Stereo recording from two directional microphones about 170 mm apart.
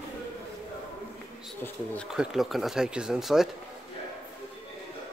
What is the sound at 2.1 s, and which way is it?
Speech, centre (ahead or behind).